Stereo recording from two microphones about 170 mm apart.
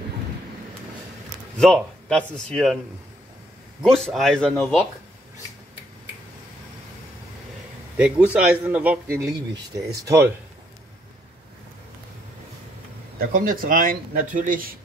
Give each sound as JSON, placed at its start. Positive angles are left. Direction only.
{"t": 1.6, "sound": "speech", "side_deg": 5}
{"t": 3.8, "sound": "speech", "side_deg": 0}
{"t": 8.0, "sound": "a man's voice", "side_deg": -5}
{"t": 13.3, "sound": "speech", "side_deg": -55}